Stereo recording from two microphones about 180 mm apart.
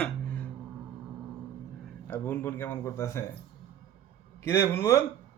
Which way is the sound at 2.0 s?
10° left (ahead or behind).